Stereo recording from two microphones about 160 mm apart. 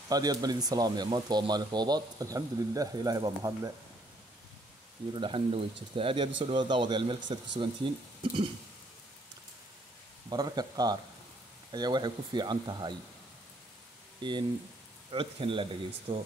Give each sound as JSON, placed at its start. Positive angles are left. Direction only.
{"t": 0.1, "sound": "speech", "side_deg": -25}
{"t": 5.1, "sound": "speech", "side_deg": -35}
{"t": 10.3, "sound": "speech", "side_deg": -25}
{"t": 14.2, "sound": "speech", "side_deg": -30}